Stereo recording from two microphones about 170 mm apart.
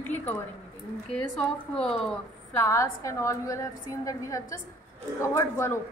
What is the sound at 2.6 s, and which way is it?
A woman's voice, 15° left (ahead or behind).